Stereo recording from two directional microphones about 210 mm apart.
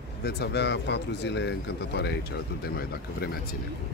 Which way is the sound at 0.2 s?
50° left (ahead or behind).